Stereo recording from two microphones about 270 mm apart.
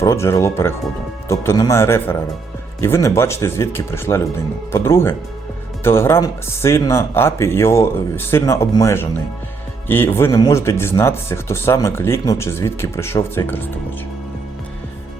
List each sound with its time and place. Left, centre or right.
0.0 s speech: centre